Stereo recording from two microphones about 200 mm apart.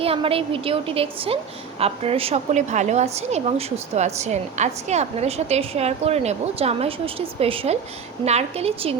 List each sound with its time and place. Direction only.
0.0 s a woman's voice: 30° right (ahead or behind)